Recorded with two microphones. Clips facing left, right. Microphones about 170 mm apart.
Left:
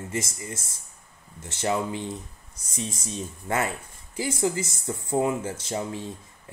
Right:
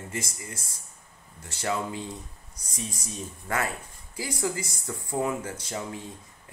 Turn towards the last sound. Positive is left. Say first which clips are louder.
# left 4 dB
turn(degrees=25)  # may be behind; listen again after turning